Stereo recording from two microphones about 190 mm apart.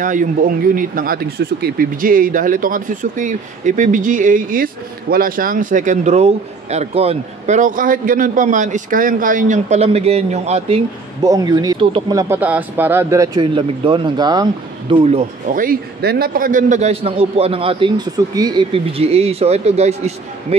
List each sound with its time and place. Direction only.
0.0 s a man's voice: 45° right (ahead or behind)
11.2 s speech: 20° right (ahead or behind); by 20.5 s 35° right (ahead or behind)